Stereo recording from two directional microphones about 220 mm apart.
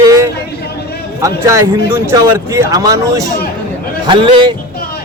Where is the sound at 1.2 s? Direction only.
15° right (ahead or behind).